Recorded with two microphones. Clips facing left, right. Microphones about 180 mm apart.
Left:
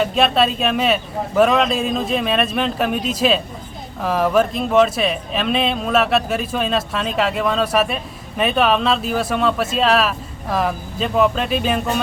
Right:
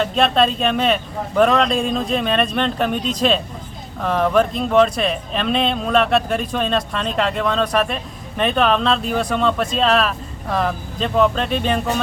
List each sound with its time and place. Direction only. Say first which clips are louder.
0.0 s speech: even; 5° left (ahead or behind)